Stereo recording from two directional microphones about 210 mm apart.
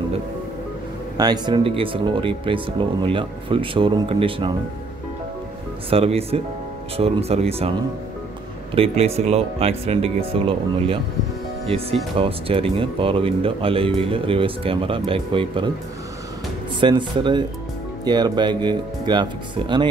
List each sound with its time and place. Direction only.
1.1 s speech: 20° right (ahead or behind)
5.9 s speech: 30° right (ahead or behind)
8.7 s speech: 25° right (ahead or behind)
16.8 s speech: 20° right (ahead or behind)